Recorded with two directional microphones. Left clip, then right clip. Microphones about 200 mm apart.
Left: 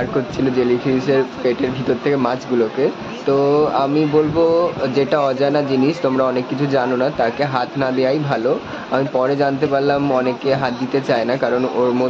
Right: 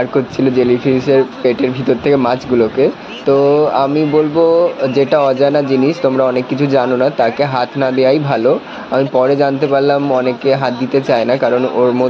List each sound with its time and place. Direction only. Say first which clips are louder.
0.6 s speech: right 4 dB; 15° right (ahead or behind)